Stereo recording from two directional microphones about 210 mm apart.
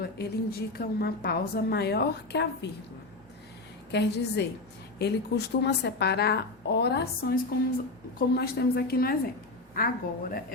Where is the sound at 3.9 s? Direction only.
55° left (ahead or behind).